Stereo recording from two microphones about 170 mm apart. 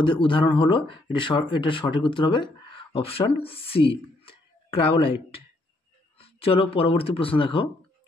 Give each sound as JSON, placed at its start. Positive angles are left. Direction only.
{"t": 0.0, "sound": "speech", "side_deg": 30}